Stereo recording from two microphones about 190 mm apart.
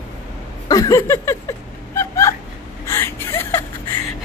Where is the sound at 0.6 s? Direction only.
15° left (ahead or behind).